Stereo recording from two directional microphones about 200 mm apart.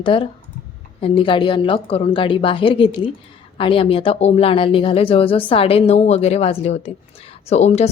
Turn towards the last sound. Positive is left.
turn(degrees=35)  # may be behind; listen again after turning